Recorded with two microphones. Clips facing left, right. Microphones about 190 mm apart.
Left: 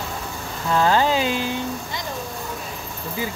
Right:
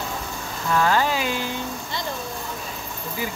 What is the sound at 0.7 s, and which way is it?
Speech, 20° left (ahead or behind).